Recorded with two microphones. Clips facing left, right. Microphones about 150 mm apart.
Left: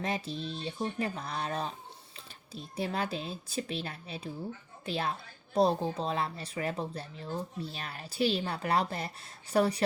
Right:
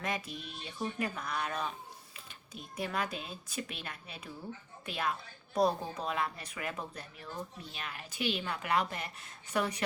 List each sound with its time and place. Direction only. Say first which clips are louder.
0.0 s speech: left 4 dB; 30° left (ahead or behind)